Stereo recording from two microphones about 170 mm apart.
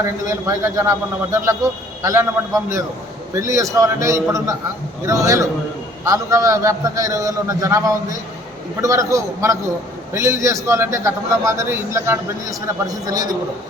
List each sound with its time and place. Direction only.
0.3 s a man's voice: 15° right (ahead or behind)